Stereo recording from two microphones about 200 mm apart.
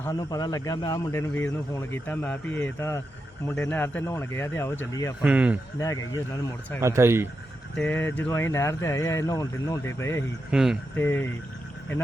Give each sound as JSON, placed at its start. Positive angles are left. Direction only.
{"t": 0.0, "sound": "speech", "side_deg": 20}
{"t": 1.3, "sound": "speech", "side_deg": 10}
{"t": 5.2, "sound": "speech", "side_deg": -5}
{"t": 5.8, "sound": "speech", "side_deg": 15}
{"t": 6.8, "sound": "speech", "side_deg": -15}
{"t": 7.8, "sound": "speech", "side_deg": 10}
{"t": 10.5, "sound": "speech", "side_deg": 0}
{"t": 10.9, "sound": "speech", "side_deg": 10}